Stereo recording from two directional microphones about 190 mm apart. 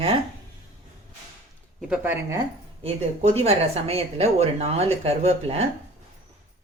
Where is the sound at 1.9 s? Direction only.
10° right (ahead or behind).